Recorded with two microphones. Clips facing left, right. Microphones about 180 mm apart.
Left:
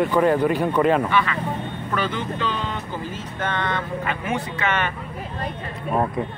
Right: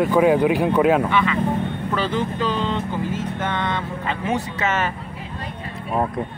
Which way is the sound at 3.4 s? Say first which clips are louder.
Left 2 dB; 15° right (ahead or behind).